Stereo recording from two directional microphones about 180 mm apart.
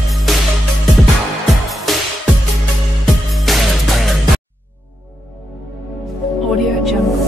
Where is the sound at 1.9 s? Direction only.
Centre (ahead or behind).